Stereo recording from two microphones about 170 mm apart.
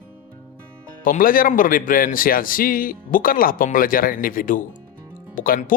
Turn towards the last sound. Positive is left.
turn(degrees=55)  # may be behind; listen again after turning